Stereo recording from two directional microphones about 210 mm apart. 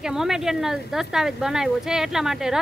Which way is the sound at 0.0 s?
Centre (ahead or behind).